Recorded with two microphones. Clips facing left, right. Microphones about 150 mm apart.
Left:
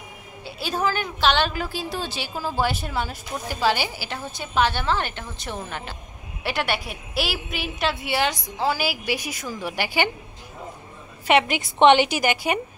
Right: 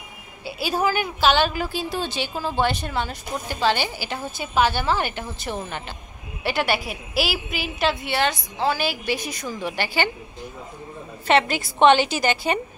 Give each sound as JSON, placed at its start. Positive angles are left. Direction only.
{"t": 0.5, "sound": "a woman's voice", "side_deg": -10}
{"t": 11.2, "sound": "a woman's voice", "side_deg": 15}